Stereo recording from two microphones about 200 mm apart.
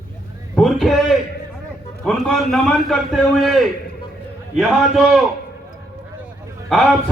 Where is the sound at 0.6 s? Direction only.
Centre (ahead or behind).